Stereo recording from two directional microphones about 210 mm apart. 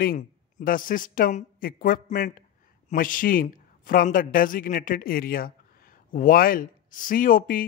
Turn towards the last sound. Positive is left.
turn(degrees=40)  # may be behind; listen again after turning